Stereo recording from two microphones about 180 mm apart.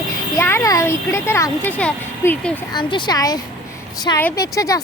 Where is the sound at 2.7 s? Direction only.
25° left (ahead or behind).